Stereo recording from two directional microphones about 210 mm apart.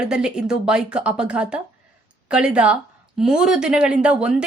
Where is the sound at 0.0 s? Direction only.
5° right (ahead or behind).